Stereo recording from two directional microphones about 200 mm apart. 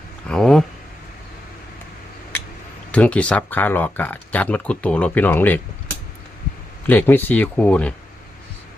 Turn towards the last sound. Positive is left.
turn(degrees=5)  # may be behind; listen again after turning